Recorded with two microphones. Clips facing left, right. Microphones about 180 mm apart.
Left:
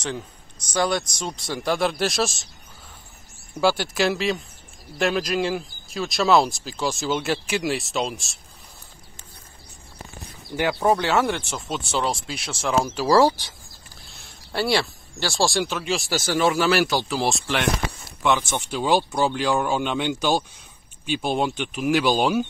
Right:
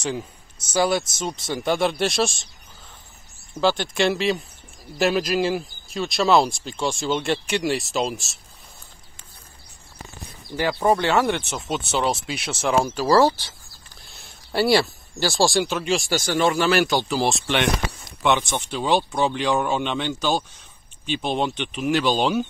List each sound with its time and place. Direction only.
0.0 s speech: 10° right (ahead or behind)
3.5 s speech: 10° left (ahead or behind)
10.5 s speech: 5° left (ahead or behind)
13.0 s speech: 10° left (ahead or behind)
14.1 s speech: centre (ahead or behind)